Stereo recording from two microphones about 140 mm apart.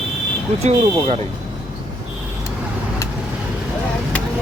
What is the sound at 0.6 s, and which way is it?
Speech, 50° right (ahead or behind).